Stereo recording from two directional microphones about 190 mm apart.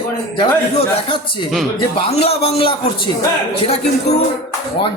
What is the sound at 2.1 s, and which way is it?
Speech, 30° left (ahead or behind).